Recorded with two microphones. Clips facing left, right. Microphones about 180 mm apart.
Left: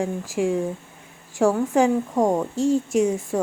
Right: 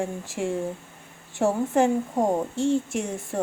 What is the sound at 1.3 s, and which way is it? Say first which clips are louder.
Speech: left 3 dB; 90° left.